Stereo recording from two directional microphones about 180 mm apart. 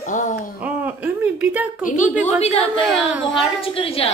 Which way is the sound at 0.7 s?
10° right (ahead or behind).